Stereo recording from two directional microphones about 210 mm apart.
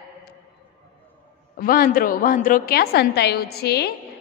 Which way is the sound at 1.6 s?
45° left (ahead or behind).